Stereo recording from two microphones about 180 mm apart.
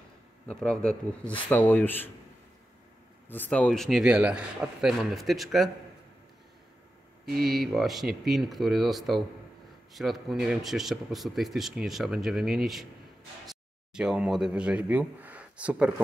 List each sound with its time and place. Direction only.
0.5 s speech: 5° left (ahead or behind)
3.3 s speech: 10° left (ahead or behind)
7.2 s speech: 60° right (ahead or behind)
7.5 s speech: centre (ahead or behind)